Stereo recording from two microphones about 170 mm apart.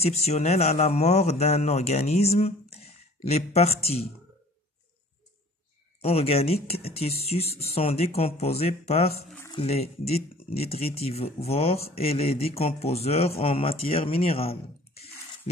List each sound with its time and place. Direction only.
0.0 s speech: 40° left (ahead or behind)
5.9 s speech: 35° left (ahead or behind)